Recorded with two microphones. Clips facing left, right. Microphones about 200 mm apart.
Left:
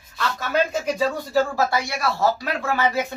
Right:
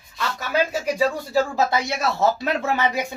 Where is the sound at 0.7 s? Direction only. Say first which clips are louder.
Right 1 dB; 10° right (ahead or behind).